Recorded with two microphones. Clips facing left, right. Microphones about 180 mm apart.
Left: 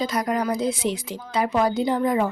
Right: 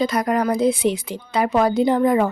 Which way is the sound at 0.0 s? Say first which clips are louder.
Right 4 dB; 60° right (ahead or behind).